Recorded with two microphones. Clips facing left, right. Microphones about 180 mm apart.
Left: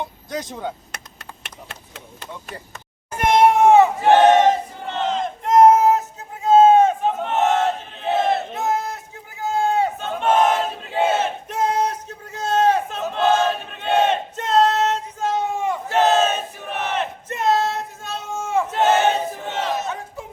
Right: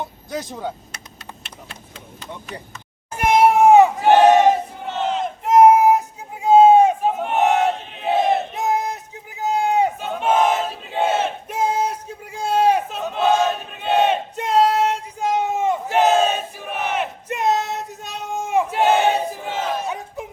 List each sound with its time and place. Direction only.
3.2 s cat: 5° right (ahead or behind)
4.0 s battle cry: 5° right (ahead or behind)
9.4 s a sound: 15° right (ahead or behind)
10.1 s battle cry: 5° right (ahead or behind)
11.4 s a sound: 10° right (ahead or behind)
19.1 s battle cry: 10° right (ahead or behind)